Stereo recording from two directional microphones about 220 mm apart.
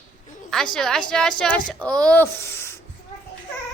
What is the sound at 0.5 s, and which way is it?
A woman's voice, 5° left (ahead or behind).